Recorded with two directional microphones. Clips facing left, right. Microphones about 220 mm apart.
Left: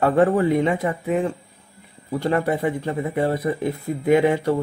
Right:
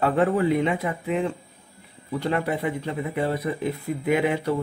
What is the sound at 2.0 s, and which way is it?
Speech, 45° left (ahead or behind).